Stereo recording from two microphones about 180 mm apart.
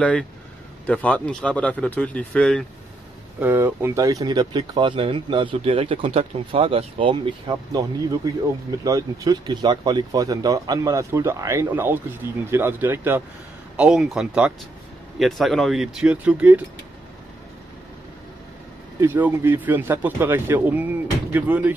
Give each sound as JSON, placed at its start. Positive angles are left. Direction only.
{"t": 0.0, "sound": "speech", "side_deg": 5}
{"t": 3.3, "sound": "speech", "side_deg": -10}
{"t": 18.9, "sound": "speech", "side_deg": -10}